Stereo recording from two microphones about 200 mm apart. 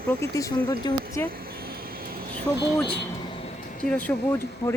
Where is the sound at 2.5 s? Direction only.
20° left (ahead or behind).